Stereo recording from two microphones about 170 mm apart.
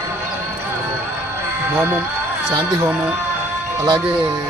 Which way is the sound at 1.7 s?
15° right (ahead or behind).